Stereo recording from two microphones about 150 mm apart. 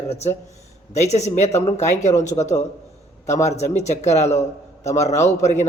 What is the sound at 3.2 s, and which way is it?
A man's voice, 50° left (ahead or behind).